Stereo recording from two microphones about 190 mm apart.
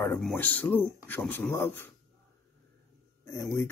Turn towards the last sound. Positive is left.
turn(degrees=15)  # may be behind; listen again after turning